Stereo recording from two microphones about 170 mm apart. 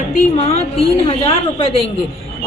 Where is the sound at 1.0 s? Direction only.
35° left (ahead or behind).